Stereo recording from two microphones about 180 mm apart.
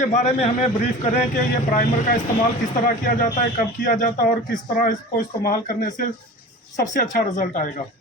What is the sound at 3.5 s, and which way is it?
Speech, 50° left (ahead or behind).